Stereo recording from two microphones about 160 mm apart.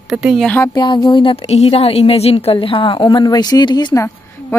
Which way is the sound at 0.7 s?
30° left (ahead or behind).